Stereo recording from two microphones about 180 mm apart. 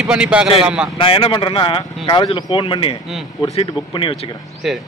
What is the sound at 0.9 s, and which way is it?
Speech, 30° left (ahead or behind).